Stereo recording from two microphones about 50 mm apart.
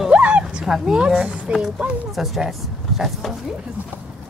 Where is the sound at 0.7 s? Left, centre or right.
Centre.